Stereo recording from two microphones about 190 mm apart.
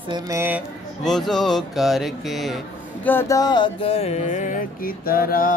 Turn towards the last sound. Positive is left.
turn(degrees=50)  # may be behind; listen again after turning